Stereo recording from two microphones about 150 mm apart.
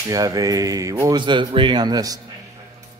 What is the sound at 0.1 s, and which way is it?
Speech, 25° right (ahead or behind).